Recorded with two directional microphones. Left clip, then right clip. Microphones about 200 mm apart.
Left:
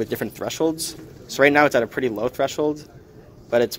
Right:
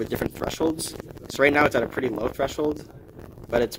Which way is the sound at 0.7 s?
35° left (ahead or behind).